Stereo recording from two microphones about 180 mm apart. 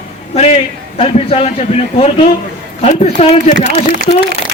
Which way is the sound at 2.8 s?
40° left (ahead or behind).